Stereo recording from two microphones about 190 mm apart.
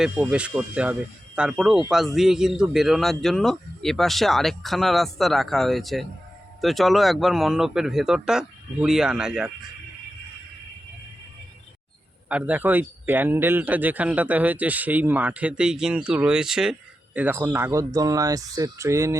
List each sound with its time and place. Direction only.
0.0 s a man's voice: 5° right (ahead or behind)
12.3 s speech: 5° right (ahead or behind)